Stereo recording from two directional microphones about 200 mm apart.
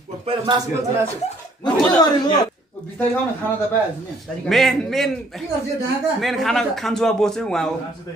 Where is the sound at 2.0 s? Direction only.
20° left (ahead or behind).